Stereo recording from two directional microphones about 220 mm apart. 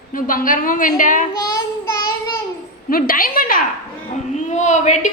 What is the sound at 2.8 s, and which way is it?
A woman's voice, 40° left (ahead or behind).